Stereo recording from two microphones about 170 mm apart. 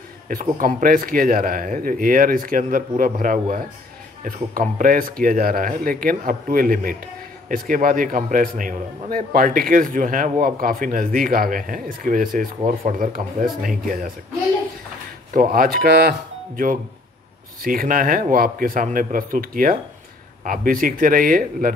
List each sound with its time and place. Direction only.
0.3 s a man's voice: 55° right (ahead or behind)
15.3 s a man's voice: 60° right (ahead or behind)